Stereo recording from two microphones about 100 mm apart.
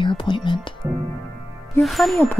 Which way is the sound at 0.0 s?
55° left (ahead or behind).